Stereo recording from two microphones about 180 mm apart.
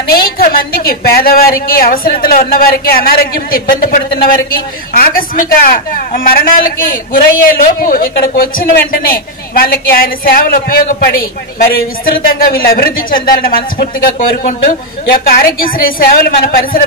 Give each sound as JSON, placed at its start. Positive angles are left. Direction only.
{"t": 0.1, "sound": "a woman's voice", "side_deg": 55}
{"t": 15.0, "sound": "a man's voice", "side_deg": 55}